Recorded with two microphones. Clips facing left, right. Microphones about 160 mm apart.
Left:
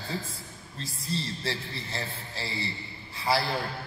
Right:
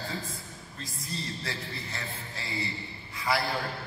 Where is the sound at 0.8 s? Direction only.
30° left (ahead or behind).